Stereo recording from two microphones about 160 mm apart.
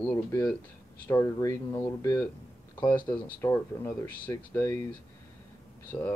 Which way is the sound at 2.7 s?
15° left (ahead or behind).